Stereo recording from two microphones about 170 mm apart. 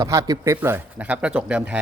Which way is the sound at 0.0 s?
20° right (ahead or behind).